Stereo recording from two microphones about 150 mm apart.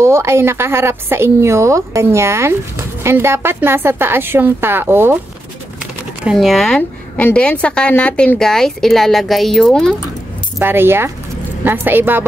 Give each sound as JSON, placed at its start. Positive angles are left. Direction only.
{"t": 0.0, "sound": "a woman's voice", "side_deg": -20}
{"t": 6.2, "sound": "a woman's voice", "side_deg": 0}
{"t": 10.6, "sound": "a woman's voice", "side_deg": -15}